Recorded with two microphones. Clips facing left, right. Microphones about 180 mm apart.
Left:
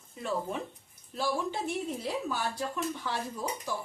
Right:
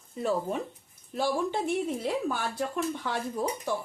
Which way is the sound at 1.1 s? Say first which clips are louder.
Right 4 dB; 55° right (ahead or behind).